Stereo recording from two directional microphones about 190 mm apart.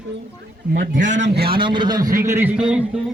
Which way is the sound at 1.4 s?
25° right (ahead or behind).